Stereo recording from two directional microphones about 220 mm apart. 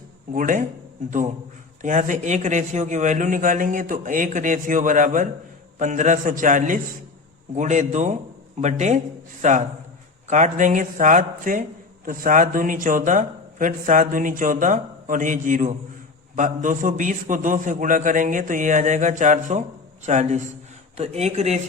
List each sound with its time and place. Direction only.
0.3 s speech: 35° right (ahead or behind)
1.8 s speech: 35° right (ahead or behind)